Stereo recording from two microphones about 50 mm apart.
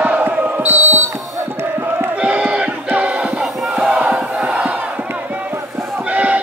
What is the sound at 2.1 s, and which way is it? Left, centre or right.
Battle cry, right.